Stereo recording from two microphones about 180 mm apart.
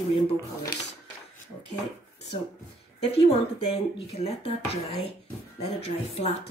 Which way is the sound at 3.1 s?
35° left (ahead or behind).